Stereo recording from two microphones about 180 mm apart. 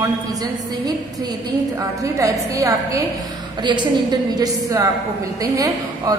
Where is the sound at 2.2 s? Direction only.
20° right (ahead or behind).